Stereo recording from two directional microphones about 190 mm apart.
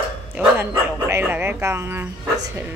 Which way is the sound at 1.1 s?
10° right (ahead or behind).